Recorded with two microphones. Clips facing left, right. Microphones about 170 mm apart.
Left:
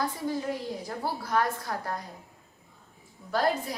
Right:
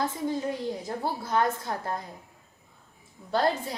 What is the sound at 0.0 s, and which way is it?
A woman's voice, 25° right (ahead or behind).